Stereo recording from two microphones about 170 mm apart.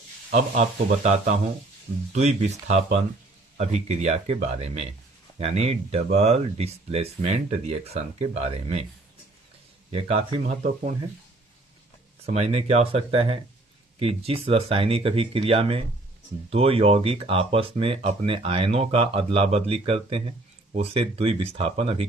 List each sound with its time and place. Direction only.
0.3 s speech: 45° right (ahead or behind)
9.9 s speech: 35° right (ahead or behind)
10.4 s speech: 50° right (ahead or behind)
12.2 s speech: 40° right (ahead or behind)